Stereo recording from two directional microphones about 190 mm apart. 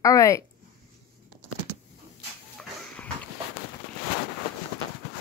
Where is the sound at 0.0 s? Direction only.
15° left (ahead or behind).